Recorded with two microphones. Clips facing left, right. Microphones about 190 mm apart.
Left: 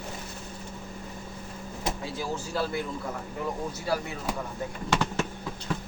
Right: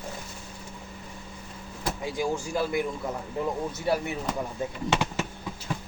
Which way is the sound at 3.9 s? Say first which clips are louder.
Right 3 dB; 25° right (ahead or behind).